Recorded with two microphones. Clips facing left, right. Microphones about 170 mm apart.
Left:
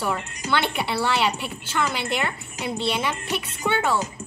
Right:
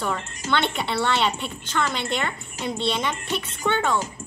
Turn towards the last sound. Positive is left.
turn(degrees=5)  # may be behind; listen again after turning